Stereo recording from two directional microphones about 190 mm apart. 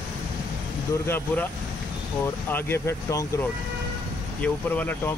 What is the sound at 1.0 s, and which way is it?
Speech, 10° left (ahead or behind).